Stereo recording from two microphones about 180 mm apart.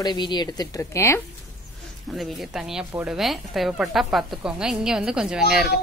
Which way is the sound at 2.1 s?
Centre (ahead or behind).